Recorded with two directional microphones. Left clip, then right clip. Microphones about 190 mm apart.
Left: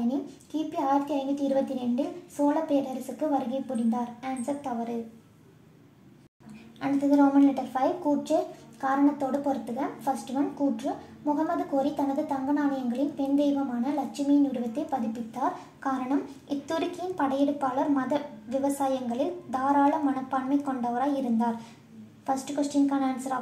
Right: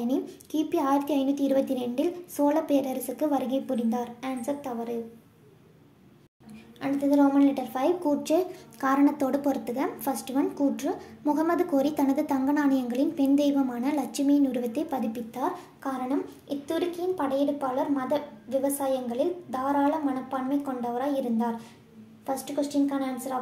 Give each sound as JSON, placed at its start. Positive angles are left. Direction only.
{"t": 0.5, "sound": "a woman's voice", "side_deg": -35}
{"t": 6.8, "sound": "a woman's voice", "side_deg": -10}